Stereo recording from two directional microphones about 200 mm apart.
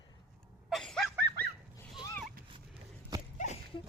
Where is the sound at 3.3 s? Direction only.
35° left (ahead or behind).